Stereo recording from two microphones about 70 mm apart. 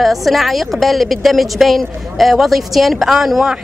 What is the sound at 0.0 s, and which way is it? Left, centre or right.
A woman's voice, centre.